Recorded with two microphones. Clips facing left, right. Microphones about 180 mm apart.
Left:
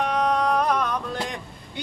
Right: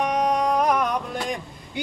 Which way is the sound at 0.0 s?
15° right (ahead or behind).